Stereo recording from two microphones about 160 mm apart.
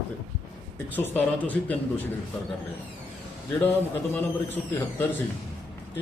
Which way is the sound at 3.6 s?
10° left (ahead or behind).